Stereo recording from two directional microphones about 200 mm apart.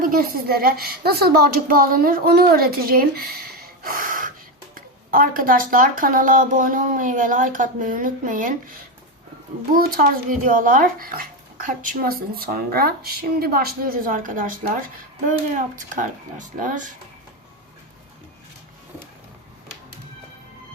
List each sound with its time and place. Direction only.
0.0 s speech: 45° right (ahead or behind)
3.8 s gasp: 45° right (ahead or behind)
4.7 s speech: 45° right (ahead or behind)
9.7 s speech: 45° right (ahead or behind)